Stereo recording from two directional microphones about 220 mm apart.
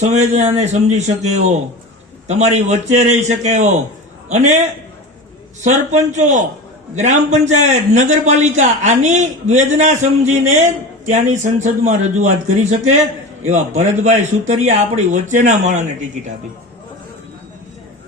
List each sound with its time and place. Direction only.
0.0 s a man's voice: 30° right (ahead or behind)
5.6 s a man's voice: 35° right (ahead or behind)
13.4 s a man's voice: 30° right (ahead or behind)